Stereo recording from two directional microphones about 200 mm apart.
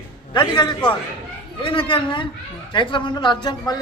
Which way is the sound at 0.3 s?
20° left (ahead or behind).